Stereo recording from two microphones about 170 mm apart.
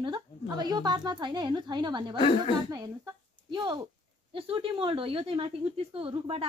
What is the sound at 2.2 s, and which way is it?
Speech, 30° left (ahead or behind).